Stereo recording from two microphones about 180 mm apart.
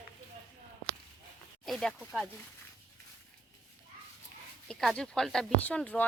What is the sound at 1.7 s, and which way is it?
Speech, centre (ahead or behind).